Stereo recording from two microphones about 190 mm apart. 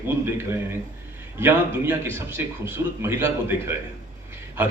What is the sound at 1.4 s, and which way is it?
Speech, 10° right (ahead or behind).